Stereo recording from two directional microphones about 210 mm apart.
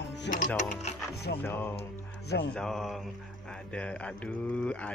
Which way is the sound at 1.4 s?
10° left (ahead or behind).